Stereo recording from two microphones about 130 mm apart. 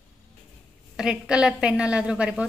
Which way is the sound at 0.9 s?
5° right (ahead or behind).